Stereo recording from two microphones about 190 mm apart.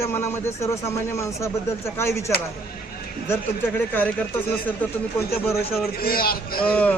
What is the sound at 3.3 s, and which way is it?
Speech, 10° left (ahead or behind).